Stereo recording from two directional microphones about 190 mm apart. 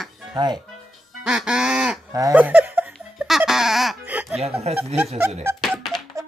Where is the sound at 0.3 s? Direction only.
20° right (ahead or behind).